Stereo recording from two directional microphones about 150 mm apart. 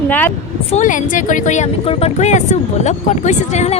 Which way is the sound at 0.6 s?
50° left (ahead or behind).